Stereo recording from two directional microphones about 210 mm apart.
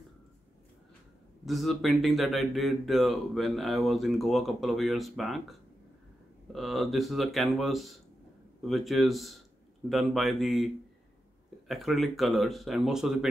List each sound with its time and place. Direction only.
1.4 s speech: centre (ahead or behind)